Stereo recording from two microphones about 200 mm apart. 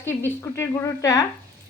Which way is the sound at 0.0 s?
10° left (ahead or behind).